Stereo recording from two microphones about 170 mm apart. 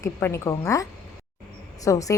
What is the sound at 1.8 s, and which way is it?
Speech, 20° left (ahead or behind).